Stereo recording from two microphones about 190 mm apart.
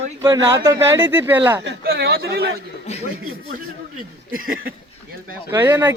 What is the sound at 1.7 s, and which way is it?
Speech, 55° right (ahead or behind).